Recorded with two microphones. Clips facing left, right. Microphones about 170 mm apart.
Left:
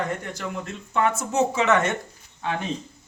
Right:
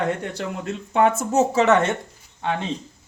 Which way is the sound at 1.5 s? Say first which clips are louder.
Right 4 dB; 35° right (ahead or behind).